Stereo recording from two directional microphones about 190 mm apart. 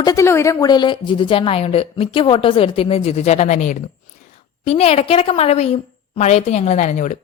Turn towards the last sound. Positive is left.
turn(degrees=40)  # may be behind; listen again after turning